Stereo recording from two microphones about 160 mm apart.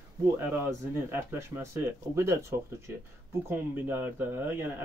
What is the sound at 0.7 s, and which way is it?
Speech, 15° right (ahead or behind).